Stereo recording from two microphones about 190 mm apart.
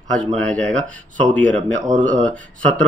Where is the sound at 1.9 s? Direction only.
40° right (ahead or behind).